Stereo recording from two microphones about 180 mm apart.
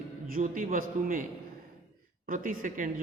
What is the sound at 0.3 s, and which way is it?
Speech, 50° right (ahead or behind).